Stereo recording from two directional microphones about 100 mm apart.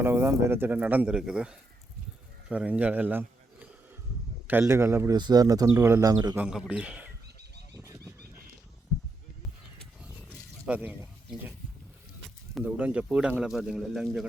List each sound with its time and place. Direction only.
0.0 s a man's voice: 25° right (ahead or behind)
5.1 s speech: 45° right (ahead or behind)
5.8 s speech: 25° right (ahead or behind)
6.1 s speech: 40° right (ahead or behind)
6.5 s speech: 10° right (ahead or behind)
7.7 s a sound: 30° right (ahead or behind)
10.7 s speech: 15° right (ahead or behind)
12.6 s a man's voice: 15° right (ahead or behind)